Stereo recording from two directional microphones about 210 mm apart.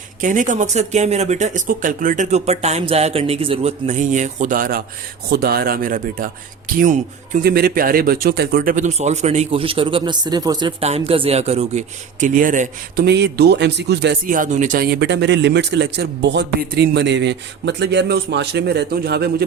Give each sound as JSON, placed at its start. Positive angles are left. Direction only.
{"t": 0.2, "sound": "a man's voice", "side_deg": -40}
{"t": 7.3, "sound": "a man's voice", "side_deg": -45}
{"t": 14.3, "sound": "speech", "side_deg": -40}